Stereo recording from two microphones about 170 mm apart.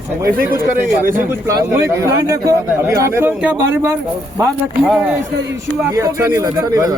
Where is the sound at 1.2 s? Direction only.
15° right (ahead or behind).